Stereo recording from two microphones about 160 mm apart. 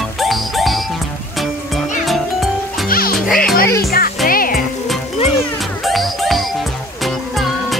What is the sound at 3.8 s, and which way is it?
Music, 70° left (ahead or behind).